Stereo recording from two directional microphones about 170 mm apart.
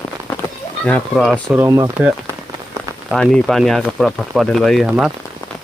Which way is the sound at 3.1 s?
5° left (ahead or behind).